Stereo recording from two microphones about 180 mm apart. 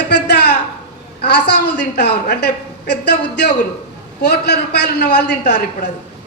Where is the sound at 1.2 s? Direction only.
65° left (ahead or behind).